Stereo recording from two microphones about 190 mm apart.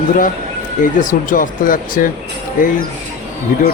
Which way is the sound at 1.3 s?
45° left (ahead or behind).